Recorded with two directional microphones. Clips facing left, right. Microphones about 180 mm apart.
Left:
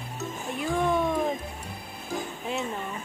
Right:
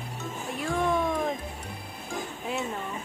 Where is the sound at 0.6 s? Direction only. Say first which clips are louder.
Left 1 dB; 5° left (ahead or behind).